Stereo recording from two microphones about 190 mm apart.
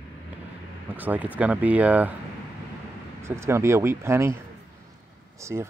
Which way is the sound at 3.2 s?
15° right (ahead or behind).